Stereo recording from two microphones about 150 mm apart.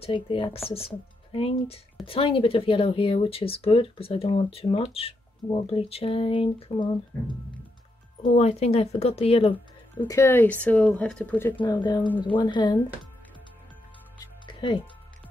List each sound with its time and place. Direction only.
0.0 s speech: 35° left (ahead or behind)
8.4 s speech: 45° left (ahead or behind)
10.0 s speech: 20° left (ahead or behind)
11.6 s speech: 30° left (ahead or behind)
14.4 s music: 30° left (ahead or behind)